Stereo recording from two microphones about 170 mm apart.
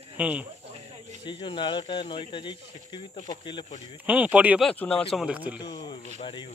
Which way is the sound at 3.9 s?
10° right (ahead or behind).